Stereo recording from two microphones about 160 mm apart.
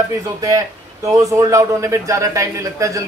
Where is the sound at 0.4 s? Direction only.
20° right (ahead or behind).